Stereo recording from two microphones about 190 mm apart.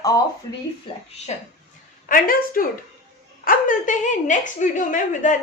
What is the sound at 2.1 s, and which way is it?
A woman's voice, 45° left (ahead or behind).